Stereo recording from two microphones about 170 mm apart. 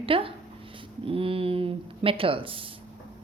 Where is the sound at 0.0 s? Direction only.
30° right (ahead or behind).